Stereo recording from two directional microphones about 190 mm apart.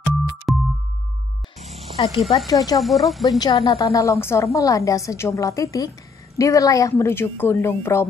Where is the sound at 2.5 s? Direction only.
20° left (ahead or behind).